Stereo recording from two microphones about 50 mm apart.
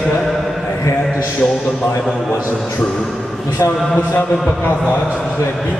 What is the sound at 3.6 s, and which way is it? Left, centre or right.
A man's voice, left.